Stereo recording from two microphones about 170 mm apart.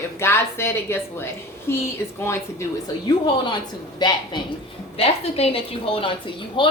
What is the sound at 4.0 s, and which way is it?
A woman's voice, 25° left (ahead or behind).